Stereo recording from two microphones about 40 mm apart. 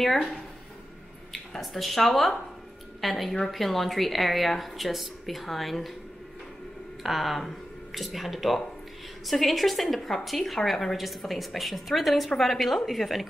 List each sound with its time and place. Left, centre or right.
0.0 s a woman's voice: centre
1.6 s a woman's voice: centre
7.0 s a woman's voice: centre